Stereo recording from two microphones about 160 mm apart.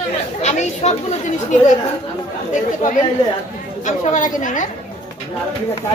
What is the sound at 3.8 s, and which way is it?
Speech, 50° left (ahead or behind).